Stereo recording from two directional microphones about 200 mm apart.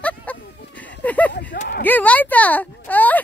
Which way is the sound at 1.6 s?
45° left (ahead or behind).